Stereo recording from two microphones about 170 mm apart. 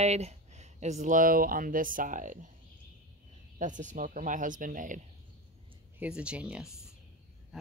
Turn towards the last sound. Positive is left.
turn(degrees=-5)  # may be behind; listen again after turning